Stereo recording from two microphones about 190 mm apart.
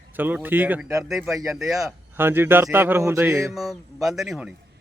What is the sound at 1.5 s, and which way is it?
Speech, centre (ahead or behind).